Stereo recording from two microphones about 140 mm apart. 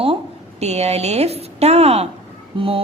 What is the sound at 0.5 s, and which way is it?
Speech, 50° right (ahead or behind).